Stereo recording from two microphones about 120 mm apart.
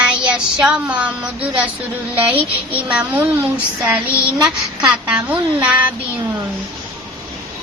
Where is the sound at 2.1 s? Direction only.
15° right (ahead or behind).